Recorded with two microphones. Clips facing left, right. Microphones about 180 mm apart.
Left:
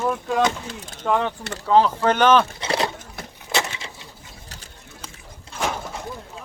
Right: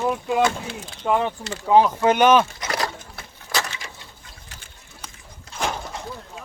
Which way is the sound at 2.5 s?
25° left (ahead or behind).